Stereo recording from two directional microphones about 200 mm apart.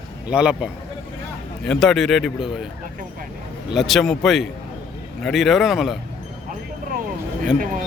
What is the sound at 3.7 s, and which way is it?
A man's voice, centre (ahead or behind).